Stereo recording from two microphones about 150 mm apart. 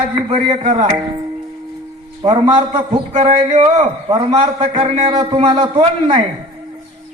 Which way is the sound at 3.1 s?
50° right (ahead or behind).